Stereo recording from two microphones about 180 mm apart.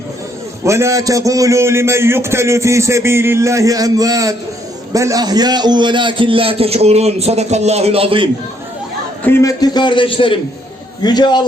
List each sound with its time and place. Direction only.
0.6 s a man's voice: 15° right (ahead or behind)
9.2 s a man's voice: 15° left (ahead or behind)